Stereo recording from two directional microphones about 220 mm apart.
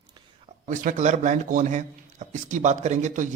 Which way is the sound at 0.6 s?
35° right (ahead or behind).